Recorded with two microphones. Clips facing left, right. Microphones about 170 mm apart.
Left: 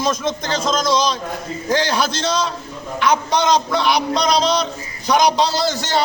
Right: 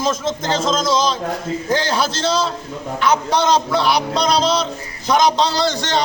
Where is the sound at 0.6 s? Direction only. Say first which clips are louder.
Even; 25° right (ahead or behind).